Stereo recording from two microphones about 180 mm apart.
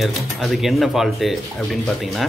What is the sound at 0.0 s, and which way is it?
Speech, centre (ahead or behind).